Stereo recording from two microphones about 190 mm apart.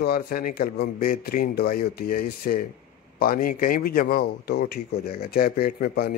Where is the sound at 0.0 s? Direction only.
50° left (ahead or behind).